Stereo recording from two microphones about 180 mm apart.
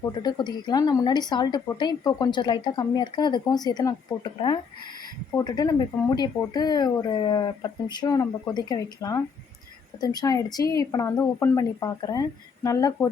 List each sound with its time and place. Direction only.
0.2 s a woman's voice: 25° left (ahead or behind)